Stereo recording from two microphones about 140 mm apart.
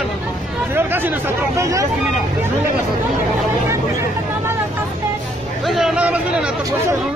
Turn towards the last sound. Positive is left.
turn(degrees=-10)  # may be behind; listen again after turning